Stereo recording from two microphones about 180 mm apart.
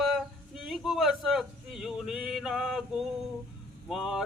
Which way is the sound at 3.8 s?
Centre (ahead or behind).